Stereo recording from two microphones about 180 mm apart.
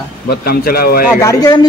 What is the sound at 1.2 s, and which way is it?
Speech, 20° left (ahead or behind).